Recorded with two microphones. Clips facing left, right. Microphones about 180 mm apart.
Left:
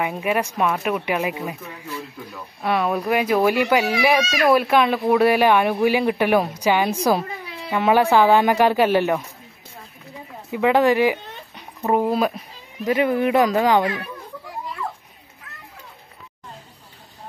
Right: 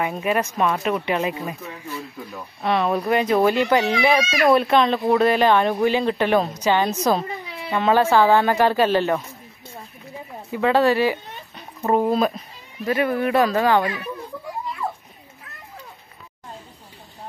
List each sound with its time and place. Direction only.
0.0 s a woman's voice: 10° left (ahead or behind)
2.6 s a woman's voice: 5° left (ahead or behind)
10.5 s a woman's voice: 15° left (ahead or behind)